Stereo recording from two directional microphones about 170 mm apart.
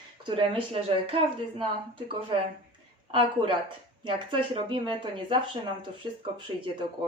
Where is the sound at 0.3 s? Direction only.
30° right (ahead or behind).